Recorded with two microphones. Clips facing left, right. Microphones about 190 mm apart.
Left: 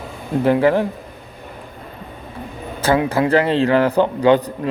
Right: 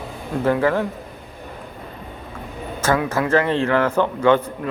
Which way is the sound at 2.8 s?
30° left (ahead or behind).